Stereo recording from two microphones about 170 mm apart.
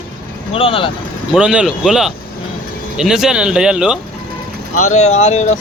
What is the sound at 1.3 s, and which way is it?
Speech, 5° right (ahead or behind).